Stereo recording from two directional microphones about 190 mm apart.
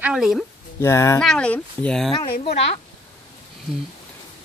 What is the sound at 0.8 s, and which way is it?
Speech, 15° left (ahead or behind).